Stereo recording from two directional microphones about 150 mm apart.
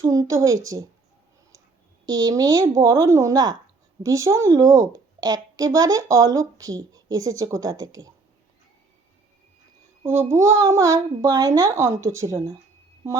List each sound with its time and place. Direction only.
0.0 s a woman's voice: 20° right (ahead or behind)
2.0 s a woman's voice: 25° right (ahead or behind)
10.0 s a woman's voice: 15° right (ahead or behind)